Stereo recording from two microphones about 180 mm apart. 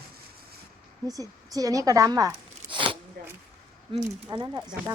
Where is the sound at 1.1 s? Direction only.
20° right (ahead or behind).